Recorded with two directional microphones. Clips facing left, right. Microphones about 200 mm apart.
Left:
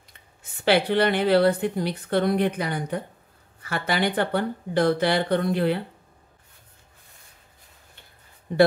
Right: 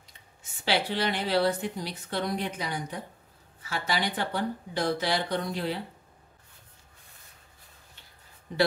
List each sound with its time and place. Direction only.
0.4 s a woman's voice: 55° left (ahead or behind)